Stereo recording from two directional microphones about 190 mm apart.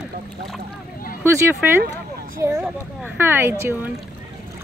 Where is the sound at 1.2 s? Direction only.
15° right (ahead or behind).